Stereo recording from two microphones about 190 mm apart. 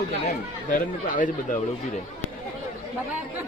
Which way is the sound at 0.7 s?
45° left (ahead or behind).